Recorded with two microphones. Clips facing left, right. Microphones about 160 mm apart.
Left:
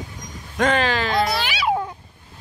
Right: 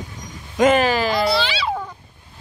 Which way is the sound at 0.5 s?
5° right (ahead or behind).